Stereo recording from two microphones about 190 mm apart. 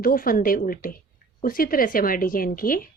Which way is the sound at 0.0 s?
50° left (ahead or behind).